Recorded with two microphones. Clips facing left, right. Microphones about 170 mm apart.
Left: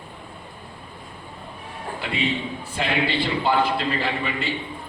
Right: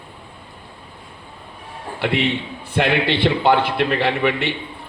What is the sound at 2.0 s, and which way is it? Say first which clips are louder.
A man's voice: right 6 dB; 70° right (ahead or behind).